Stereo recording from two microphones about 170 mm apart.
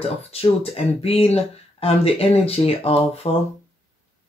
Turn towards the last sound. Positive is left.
turn(degrees=35)  # may be behind; listen again after turning